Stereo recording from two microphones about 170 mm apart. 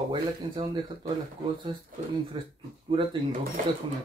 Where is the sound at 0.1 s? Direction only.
25° right (ahead or behind).